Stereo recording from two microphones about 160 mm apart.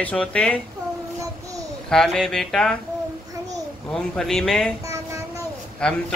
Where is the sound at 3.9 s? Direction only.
5° left (ahead or behind).